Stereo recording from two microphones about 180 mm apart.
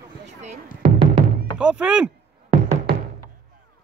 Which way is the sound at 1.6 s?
5° right (ahead or behind).